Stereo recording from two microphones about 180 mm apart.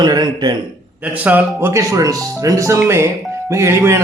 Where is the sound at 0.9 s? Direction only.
10° right (ahead or behind).